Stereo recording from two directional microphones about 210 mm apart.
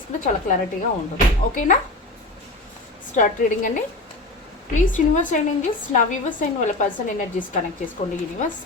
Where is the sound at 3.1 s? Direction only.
35° left (ahead or behind).